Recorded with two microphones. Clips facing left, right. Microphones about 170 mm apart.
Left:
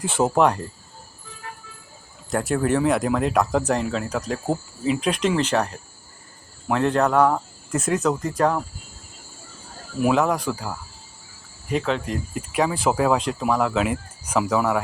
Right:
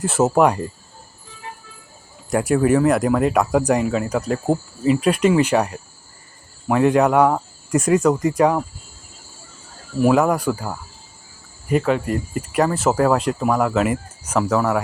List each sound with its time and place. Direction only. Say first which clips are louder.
0.0 s speech: right 3 dB; 5° right (ahead or behind)
2.3 s speech: right 5 dB; 10° right (ahead or behind)
10.0 s speech: right 4 dB; 5° right (ahead or behind)